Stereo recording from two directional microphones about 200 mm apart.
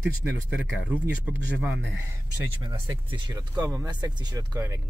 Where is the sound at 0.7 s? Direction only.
5° right (ahead or behind).